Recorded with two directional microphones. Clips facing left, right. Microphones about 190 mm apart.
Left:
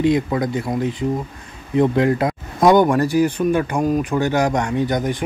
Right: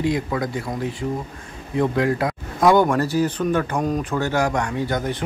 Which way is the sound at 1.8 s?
25° left (ahead or behind).